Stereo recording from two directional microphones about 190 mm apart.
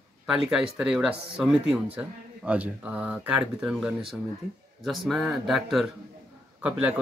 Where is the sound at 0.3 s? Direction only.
5° right (ahead or behind).